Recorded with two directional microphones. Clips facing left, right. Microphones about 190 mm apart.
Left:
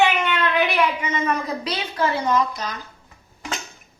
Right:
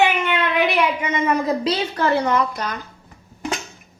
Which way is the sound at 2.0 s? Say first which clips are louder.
Right 2 dB; 65° right (ahead or behind).